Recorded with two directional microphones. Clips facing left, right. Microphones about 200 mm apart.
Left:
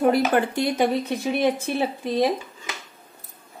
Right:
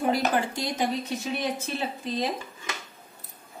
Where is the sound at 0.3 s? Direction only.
60° left (ahead or behind).